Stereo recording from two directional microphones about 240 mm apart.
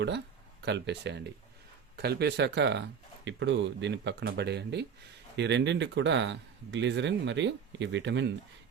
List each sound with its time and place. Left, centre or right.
0.6 s speech: right